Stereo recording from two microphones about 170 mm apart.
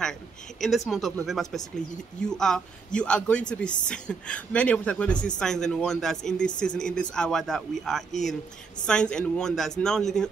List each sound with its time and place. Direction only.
0.6 s speech: centre (ahead or behind)